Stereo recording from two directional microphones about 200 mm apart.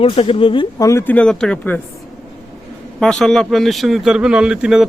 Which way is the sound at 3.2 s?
Centre (ahead or behind).